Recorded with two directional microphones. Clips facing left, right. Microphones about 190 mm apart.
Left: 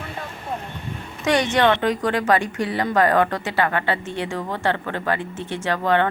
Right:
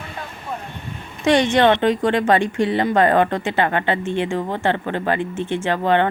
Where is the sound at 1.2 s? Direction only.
30° right (ahead or behind).